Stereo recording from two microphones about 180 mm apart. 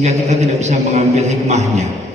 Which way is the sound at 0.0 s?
35° right (ahead or behind).